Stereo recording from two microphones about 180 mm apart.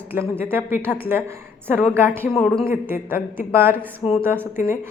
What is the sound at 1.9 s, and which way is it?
Speech, 10° right (ahead or behind).